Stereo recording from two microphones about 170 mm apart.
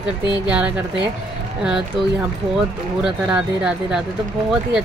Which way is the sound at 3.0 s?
5° right (ahead or behind).